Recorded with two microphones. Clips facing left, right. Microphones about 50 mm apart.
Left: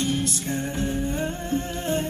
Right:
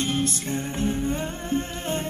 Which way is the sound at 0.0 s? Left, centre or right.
Right.